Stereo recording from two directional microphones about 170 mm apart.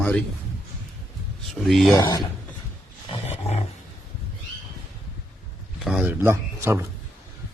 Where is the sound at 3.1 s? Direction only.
35° left (ahead or behind).